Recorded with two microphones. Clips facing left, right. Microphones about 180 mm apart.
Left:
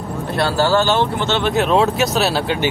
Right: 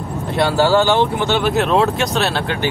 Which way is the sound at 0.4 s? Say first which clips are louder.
Right 2 dB; 15° right (ahead or behind).